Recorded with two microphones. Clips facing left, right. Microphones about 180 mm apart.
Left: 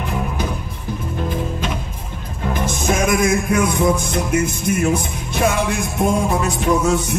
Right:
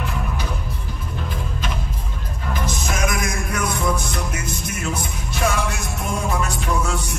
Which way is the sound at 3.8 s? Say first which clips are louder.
Left 6 dB; 25° left (ahead or behind).